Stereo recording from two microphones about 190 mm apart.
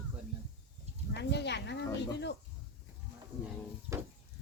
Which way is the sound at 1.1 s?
65° left (ahead or behind).